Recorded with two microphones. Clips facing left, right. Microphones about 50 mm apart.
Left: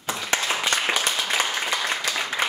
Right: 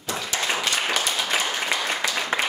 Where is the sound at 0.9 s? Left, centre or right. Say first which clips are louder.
Left 1 dB; centre.